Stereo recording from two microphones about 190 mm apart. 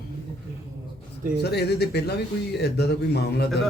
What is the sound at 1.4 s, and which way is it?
A man's voice, 60° left (ahead or behind).